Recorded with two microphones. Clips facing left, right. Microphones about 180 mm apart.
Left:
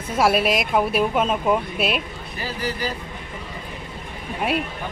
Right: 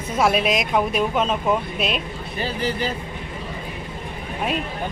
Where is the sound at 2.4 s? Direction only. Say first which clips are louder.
Right 3 dB; 25° right (ahead or behind).